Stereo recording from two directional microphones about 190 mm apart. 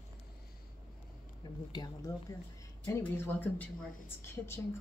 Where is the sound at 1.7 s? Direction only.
20° left (ahead or behind).